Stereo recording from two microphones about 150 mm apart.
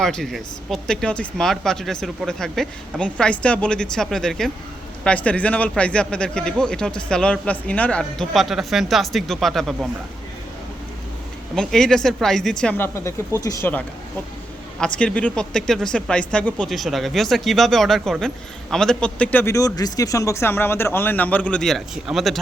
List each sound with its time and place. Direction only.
0.0 s a man's voice: 5° left (ahead or behind)
11.5 s a man's voice: 5° left (ahead or behind); by 13.7 s 20° left (ahead or behind)
14.8 s a man's voice: 5° left (ahead or behind)